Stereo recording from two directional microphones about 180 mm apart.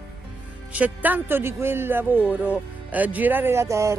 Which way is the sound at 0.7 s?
10° right (ahead or behind).